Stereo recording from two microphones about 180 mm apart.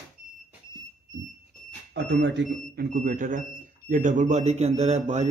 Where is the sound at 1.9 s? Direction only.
75° right (ahead or behind).